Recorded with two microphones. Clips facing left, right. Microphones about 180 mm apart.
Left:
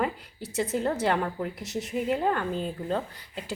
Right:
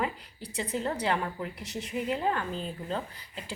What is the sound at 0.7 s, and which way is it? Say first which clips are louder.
A woman's voice: left 3 dB; 45° left (ahead or behind).